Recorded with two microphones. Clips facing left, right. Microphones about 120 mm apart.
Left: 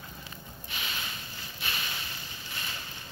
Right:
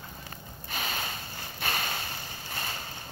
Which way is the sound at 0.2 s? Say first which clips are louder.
Right 1 dB; 45° right (ahead or behind).